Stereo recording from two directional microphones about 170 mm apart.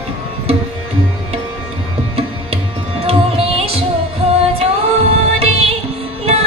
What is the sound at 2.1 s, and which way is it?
Music, 35° right (ahead or behind).